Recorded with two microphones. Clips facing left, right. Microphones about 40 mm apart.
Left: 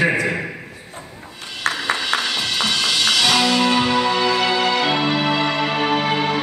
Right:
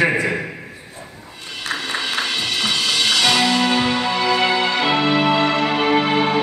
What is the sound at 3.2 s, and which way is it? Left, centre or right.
Music, centre.